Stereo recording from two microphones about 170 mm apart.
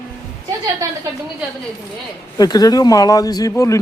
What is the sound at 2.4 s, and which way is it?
Speech, 20° left (ahead or behind).